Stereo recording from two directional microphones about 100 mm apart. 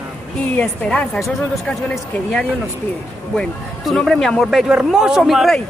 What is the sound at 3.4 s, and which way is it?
Speech, 5° left (ahead or behind).